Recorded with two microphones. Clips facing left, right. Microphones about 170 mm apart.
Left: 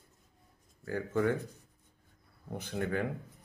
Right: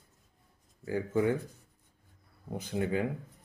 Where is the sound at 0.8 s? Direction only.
15° right (ahead or behind).